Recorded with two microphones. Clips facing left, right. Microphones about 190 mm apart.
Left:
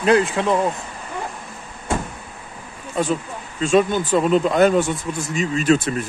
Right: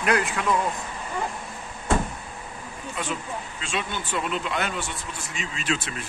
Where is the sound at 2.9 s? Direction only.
40° left (ahead or behind).